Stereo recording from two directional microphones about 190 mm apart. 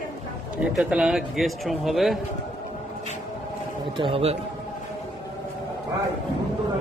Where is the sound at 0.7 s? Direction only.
5° right (ahead or behind).